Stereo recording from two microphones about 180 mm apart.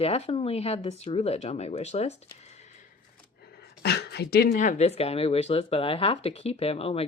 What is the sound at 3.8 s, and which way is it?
A woman's voice, 65° left (ahead or behind).